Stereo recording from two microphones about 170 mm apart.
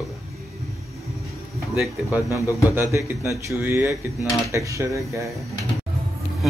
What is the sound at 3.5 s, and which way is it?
Speech, 15° right (ahead or behind).